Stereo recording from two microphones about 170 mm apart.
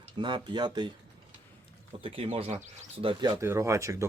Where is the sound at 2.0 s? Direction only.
35° right (ahead or behind).